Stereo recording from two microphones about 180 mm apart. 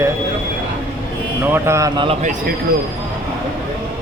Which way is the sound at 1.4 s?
15° right (ahead or behind).